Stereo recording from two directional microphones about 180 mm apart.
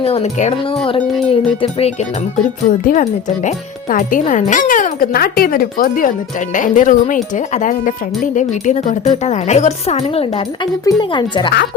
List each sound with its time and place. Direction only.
0.0 s speech: 35° left (ahead or behind)
2.8 s speech: 45° left (ahead or behind)
10.8 s speech: 25° left (ahead or behind)